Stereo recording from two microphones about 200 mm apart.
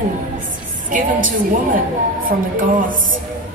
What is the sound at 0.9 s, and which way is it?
A woman's voice, 45° right (ahead or behind).